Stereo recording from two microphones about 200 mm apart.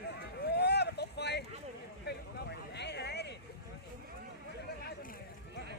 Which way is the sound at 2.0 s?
60° left (ahead or behind).